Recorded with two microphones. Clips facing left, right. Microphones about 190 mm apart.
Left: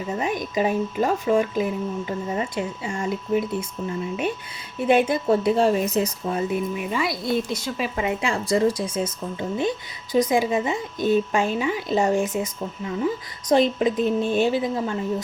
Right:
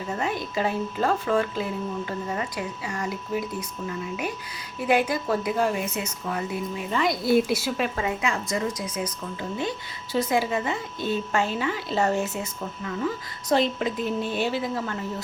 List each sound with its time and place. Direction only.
0.2 s a woman's voice: 15° left (ahead or behind)
6.9 s a woman's voice: 5° left (ahead or behind)
8.2 s a woman's voice: 30° left (ahead or behind)